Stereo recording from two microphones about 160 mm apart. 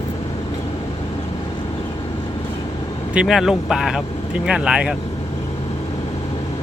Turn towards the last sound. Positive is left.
turn(degrees=-5)  # may be behind; listen again after turning